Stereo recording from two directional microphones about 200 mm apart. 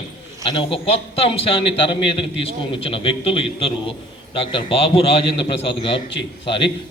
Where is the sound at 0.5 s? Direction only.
25° left (ahead or behind).